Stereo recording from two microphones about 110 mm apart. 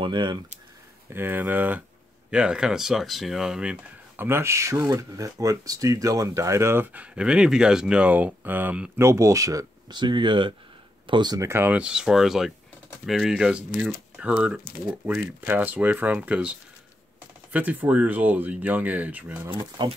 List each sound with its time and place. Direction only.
0.0 s speech: 45° right (ahead or behind)
1.1 s speech: 15° right (ahead or behind)
4.2 s speech: 20° right (ahead or behind)
8.9 s speech: 25° right (ahead or behind)
9.9 s speech: 45° right (ahead or behind)
11.4 s speech: 20° right (ahead or behind)
19.5 s speech: 40° right (ahead or behind)